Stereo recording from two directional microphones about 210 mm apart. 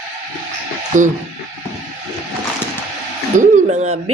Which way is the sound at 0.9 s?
35° right (ahead or behind).